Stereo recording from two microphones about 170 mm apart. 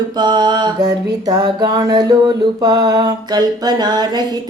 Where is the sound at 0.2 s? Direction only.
25° right (ahead or behind).